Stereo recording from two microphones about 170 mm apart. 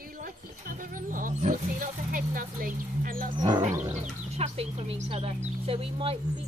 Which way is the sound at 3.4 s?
25° right (ahead or behind).